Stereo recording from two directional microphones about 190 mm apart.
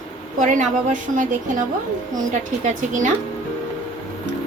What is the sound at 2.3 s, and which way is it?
Speech, 40° right (ahead or behind).